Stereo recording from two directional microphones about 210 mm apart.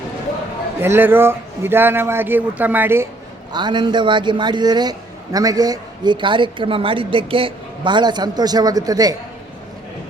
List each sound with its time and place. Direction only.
0.8 s speech: 10° right (ahead or behind)
3.5 s a man's voice: 20° right (ahead or behind)